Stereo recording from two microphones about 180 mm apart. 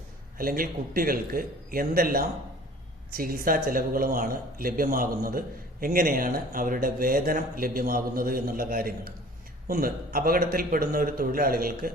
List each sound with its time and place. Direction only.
0.3 s speech: 50° right (ahead or behind)